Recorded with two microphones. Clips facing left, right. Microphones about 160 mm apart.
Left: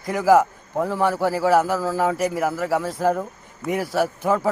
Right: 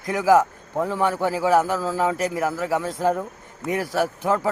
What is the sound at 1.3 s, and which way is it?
Speech, 15° right (ahead or behind).